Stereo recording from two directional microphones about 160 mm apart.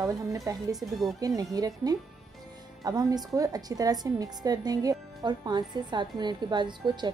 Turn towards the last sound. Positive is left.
turn(degrees=-30)  # may be behind; listen again after turning